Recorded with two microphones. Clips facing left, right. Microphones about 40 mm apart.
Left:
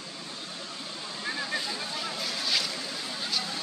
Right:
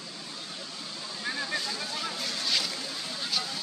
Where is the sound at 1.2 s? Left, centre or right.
Centre.